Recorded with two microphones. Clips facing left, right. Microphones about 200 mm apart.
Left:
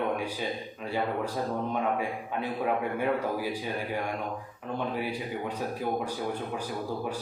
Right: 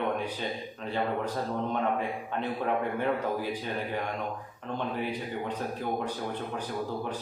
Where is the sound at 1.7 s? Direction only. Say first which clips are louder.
Even; 10° left (ahead or behind).